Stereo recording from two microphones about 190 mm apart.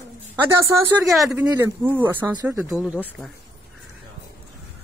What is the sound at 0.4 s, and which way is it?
Speech, 15° right (ahead or behind).